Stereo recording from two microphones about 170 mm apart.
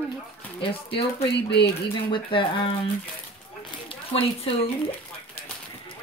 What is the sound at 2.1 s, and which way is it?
Speech, 30° left (ahead or behind).